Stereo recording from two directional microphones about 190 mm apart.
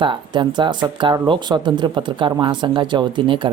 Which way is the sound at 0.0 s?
25° right (ahead or behind).